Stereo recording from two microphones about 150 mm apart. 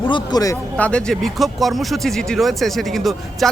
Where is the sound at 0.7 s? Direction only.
10° left (ahead or behind).